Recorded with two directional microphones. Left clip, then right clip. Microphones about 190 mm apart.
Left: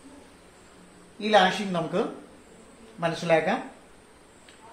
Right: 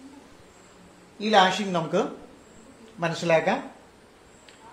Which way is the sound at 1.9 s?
45° right (ahead or behind).